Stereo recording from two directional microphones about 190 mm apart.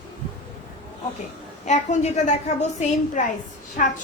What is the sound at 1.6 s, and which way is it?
A woman's voice, 40° left (ahead or behind).